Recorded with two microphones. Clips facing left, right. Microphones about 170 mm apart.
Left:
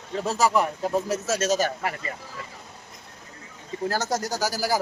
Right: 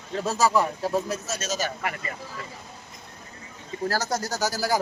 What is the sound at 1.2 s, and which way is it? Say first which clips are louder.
Speech: left 7 dB; 85° left.